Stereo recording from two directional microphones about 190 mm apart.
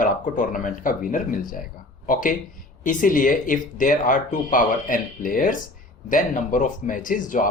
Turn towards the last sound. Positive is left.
turn(degrees=45)  # may be behind; listen again after turning